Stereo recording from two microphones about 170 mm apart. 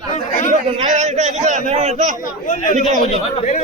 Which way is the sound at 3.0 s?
40° left (ahead or behind).